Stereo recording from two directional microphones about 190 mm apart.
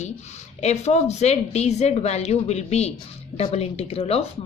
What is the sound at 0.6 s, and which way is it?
Speech, 35° left (ahead or behind).